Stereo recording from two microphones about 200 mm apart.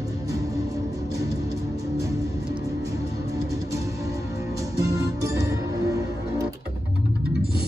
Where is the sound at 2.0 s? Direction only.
15° right (ahead or behind).